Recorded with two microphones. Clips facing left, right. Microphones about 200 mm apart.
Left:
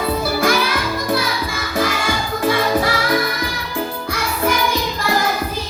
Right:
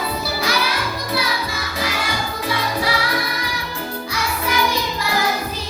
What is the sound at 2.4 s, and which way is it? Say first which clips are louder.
Music: left 7 dB; 50° left (ahead or behind).